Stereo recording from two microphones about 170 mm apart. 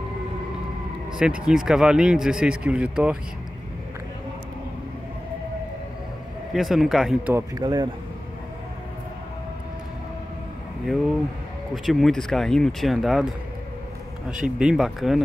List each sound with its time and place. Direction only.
1.1 s speech: 5° right (ahead or behind)
6.5 s speech: centre (ahead or behind)
7.3 s speech: 25° right (ahead or behind)
11.7 s speech: centre (ahead or behind)
14.6 s speech: 5° right (ahead or behind)